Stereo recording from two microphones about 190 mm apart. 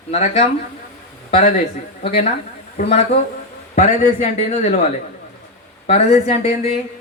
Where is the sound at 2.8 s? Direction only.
50° left (ahead or behind).